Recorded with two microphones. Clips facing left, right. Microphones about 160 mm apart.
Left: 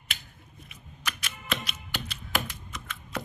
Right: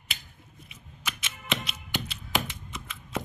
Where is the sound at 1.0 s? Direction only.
25° right (ahead or behind).